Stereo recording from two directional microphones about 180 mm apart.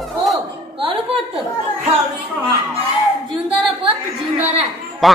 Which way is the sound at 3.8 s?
35° right (ahead or behind).